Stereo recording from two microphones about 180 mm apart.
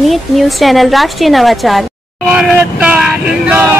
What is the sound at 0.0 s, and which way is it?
Speech, centre (ahead or behind).